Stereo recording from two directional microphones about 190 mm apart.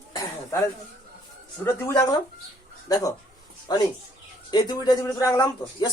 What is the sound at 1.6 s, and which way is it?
Speech, 15° left (ahead or behind).